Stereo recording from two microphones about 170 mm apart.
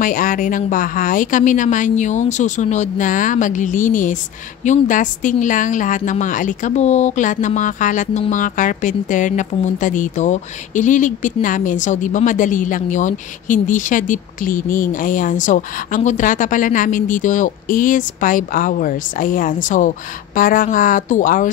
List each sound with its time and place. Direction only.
0.0 s speech: 55° left (ahead or behind)